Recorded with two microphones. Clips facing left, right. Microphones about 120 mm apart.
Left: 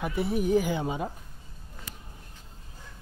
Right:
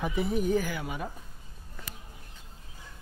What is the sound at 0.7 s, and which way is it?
Speech, 25° left (ahead or behind).